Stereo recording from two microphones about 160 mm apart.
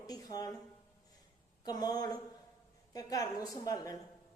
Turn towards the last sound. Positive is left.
turn(degrees=20)  # may be behind; listen again after turning